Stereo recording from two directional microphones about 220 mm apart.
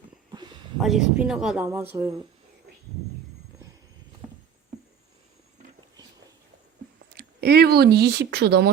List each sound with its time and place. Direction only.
0.8 s speech: centre (ahead or behind)
7.2 s speech: 45° right (ahead or behind)